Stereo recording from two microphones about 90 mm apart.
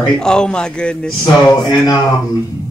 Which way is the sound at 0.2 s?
10° left (ahead or behind).